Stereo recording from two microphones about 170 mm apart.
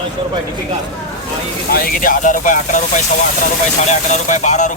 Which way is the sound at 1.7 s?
55° left (ahead or behind).